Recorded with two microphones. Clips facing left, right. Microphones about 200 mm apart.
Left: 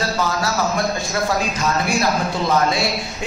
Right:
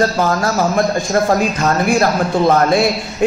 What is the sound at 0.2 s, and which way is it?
Speech, 50° right (ahead or behind).